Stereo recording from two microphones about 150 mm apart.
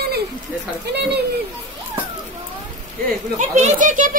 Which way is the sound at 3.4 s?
50° right (ahead or behind).